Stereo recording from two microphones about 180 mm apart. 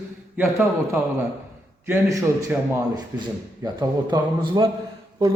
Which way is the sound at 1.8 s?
15° right (ahead or behind).